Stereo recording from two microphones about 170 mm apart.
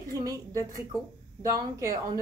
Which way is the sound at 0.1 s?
20° right (ahead or behind).